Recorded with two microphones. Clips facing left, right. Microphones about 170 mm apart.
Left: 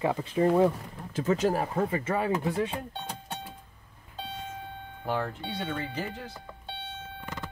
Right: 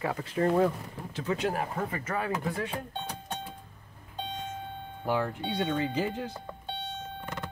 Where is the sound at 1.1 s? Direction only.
45° left (ahead or behind).